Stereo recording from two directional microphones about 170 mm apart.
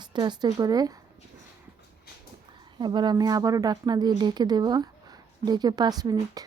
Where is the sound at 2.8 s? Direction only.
25° right (ahead or behind).